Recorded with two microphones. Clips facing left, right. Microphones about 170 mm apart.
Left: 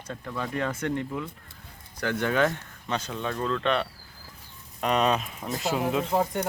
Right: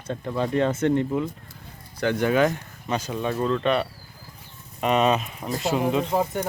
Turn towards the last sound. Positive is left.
turn(degrees=0)  # may be behind; listen again after turning